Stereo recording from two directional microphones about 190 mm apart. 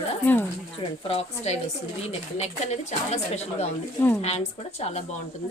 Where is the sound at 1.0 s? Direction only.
30° left (ahead or behind).